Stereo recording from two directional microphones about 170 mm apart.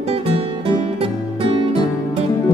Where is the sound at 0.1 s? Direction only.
35° right (ahead or behind).